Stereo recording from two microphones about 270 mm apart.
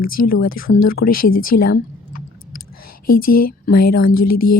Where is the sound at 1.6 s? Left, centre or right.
Left.